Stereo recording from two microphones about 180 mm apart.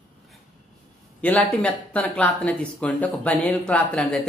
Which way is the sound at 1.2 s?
5° left (ahead or behind).